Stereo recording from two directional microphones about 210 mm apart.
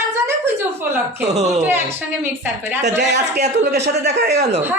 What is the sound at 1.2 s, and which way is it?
Speech, 30° right (ahead or behind).